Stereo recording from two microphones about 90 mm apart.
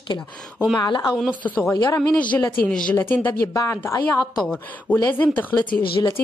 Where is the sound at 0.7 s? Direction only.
55° left (ahead or behind).